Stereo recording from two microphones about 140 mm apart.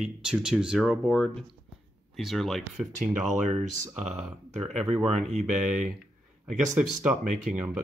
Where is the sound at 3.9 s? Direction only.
Centre (ahead or behind).